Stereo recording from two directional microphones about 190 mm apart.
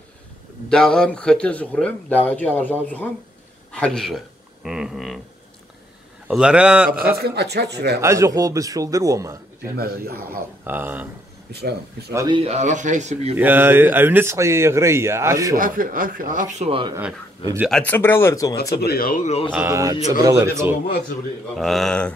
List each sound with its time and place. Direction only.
0.7 s a man's voice: 5° left (ahead or behind)
6.2 s speech: 5° right (ahead or behind)
6.9 s a man's voice: 50° right (ahead or behind)
8.0 s speech: 15° right (ahead or behind)
9.8 s speech: 50° right (ahead or behind)
10.6 s speech: 10° right (ahead or behind)
12.1 s speech: 15° right (ahead or behind)
12.4 s speech: 35° right (ahead or behind)
13.4 s speech: 10° right (ahead or behind)
15.5 s speech: 45° right (ahead or behind); by 16.9 s 30° right (ahead or behind)
17.6 s speech: 5° left (ahead or behind)
18.8 s speech: 55° left (ahead or behind); by 19.5 s 35° left (ahead or behind)
19.5 s speech: 15° right (ahead or behind)
21.5 s speech: centre (ahead or behind)